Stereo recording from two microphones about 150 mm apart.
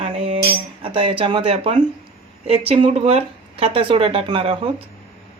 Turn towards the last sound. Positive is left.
turn(degrees=-40)  # may be behind; listen again after turning